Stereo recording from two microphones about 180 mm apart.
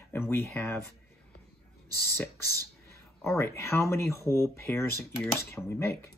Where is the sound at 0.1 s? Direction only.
10° left (ahead or behind).